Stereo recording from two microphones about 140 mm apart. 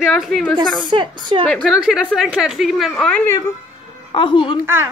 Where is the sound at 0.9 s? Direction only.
35° right (ahead or behind).